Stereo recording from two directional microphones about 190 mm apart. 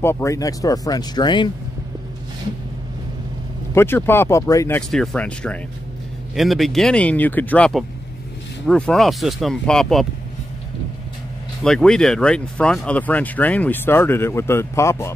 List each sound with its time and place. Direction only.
0.0 s speech: 15° left (ahead or behind)
3.7 s speech: 10° left (ahead or behind)
11.6 s speech: 5° left (ahead or behind)